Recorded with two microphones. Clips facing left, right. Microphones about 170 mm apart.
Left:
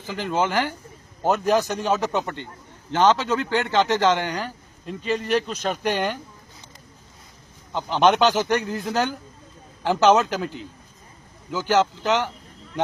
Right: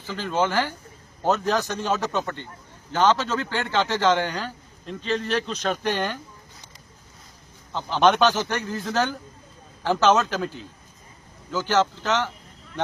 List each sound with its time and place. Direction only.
0.0 s speech: 15° left (ahead or behind)
7.7 s speech: 15° left (ahead or behind)